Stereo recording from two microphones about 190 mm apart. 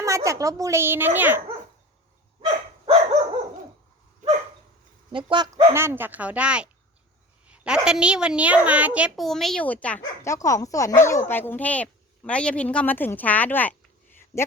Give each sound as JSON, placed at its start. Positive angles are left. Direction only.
{"t": 0.0, "sound": "speech", "side_deg": -15}
{"t": 2.8, "sound": "dog", "side_deg": -30}
{"t": 5.1, "sound": "speech", "side_deg": -25}
{"t": 5.7, "sound": "a woman's voice", "side_deg": -10}